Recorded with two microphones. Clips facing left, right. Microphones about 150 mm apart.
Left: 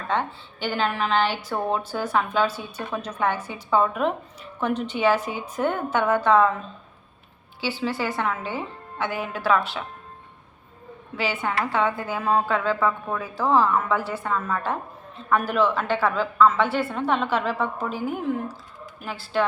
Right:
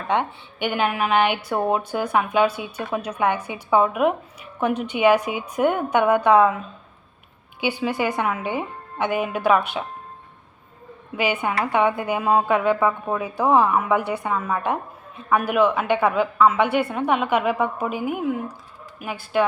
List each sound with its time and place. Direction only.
0.1 s a woman's voice: 15° right (ahead or behind)
7.6 s a woman's voice: 15° right (ahead or behind)
11.2 s a woman's voice: 15° right (ahead or behind)